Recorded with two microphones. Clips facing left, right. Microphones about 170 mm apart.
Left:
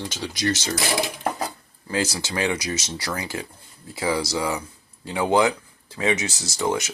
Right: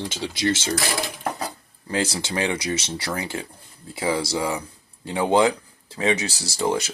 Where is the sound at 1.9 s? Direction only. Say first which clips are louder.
Right 1 dB; 25° right (ahead or behind).